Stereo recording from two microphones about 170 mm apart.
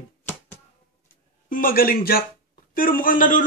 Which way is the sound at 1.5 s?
55° left (ahead or behind).